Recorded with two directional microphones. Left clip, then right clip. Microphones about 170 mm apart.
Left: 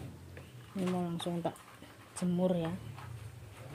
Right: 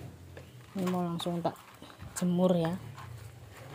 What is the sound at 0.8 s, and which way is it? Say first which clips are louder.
Speech: right 3 dB; 20° right (ahead or behind).